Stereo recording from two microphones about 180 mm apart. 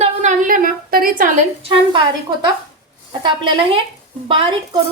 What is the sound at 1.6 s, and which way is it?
Speech, 30° right (ahead or behind).